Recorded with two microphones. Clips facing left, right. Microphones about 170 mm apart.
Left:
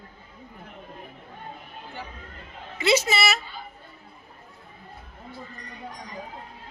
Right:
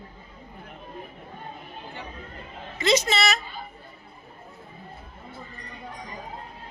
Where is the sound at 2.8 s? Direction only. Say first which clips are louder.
Even; 10° left (ahead or behind).